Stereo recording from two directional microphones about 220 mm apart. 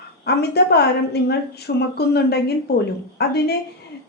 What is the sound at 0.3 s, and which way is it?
Speech, 50° left (ahead or behind).